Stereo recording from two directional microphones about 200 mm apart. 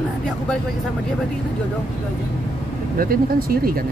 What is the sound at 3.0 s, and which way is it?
Speech, 45° right (ahead or behind).